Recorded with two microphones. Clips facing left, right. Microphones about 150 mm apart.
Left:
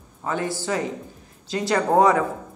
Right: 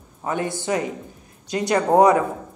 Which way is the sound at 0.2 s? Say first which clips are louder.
Right 1 dB; 20° right (ahead or behind).